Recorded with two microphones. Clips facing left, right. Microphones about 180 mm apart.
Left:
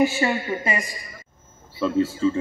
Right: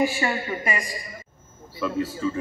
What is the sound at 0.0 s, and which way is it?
A man's voice, 25° left (ahead or behind).